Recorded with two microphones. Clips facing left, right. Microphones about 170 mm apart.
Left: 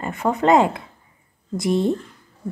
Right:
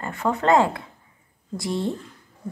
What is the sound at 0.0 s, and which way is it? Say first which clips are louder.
A woman's voice: left 3 dB; 20° left (ahead or behind).